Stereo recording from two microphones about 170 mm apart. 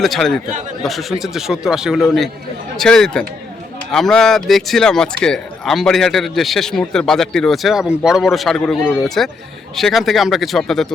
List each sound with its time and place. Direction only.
0.0 s speech: centre (ahead or behind)